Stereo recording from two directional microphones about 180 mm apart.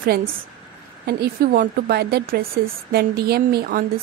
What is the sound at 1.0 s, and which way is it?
Speech, 60° right (ahead or behind).